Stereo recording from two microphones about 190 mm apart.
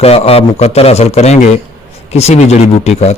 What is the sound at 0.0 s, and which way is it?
A man's voice, 30° left (ahead or behind).